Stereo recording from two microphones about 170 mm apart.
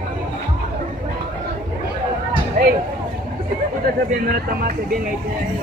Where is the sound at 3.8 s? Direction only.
60° right (ahead or behind).